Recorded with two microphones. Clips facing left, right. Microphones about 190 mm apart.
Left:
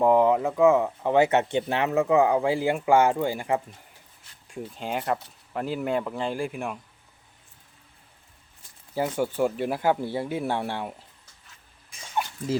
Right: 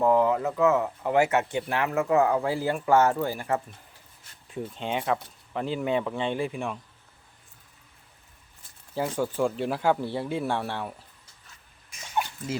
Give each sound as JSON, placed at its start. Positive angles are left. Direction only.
{"t": 0.0, "sound": "speech", "side_deg": 20}
{"t": 0.8, "sound": "speech", "side_deg": 20}
{"t": 4.4, "sound": "speech", "side_deg": 0}
{"t": 9.0, "sound": "speech", "side_deg": 10}